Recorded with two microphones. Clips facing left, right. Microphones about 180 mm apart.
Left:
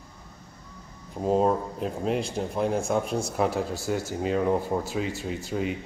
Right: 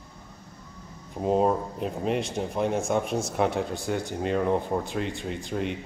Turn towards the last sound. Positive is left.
turn(degrees=5)  # may be behind; listen again after turning